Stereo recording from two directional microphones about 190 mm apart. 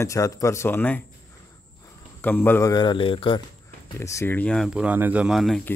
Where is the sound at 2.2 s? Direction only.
10° left (ahead or behind); by 3.4 s 25° left (ahead or behind).